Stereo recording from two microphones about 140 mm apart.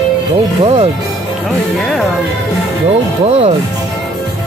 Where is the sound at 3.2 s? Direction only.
45° right (ahead or behind).